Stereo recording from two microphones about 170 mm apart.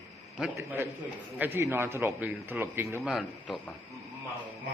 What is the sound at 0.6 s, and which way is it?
A man's voice, 15° right (ahead or behind).